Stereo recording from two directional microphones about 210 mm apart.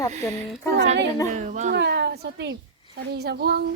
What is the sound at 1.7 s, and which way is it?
A woman's voice, 55° right (ahead or behind).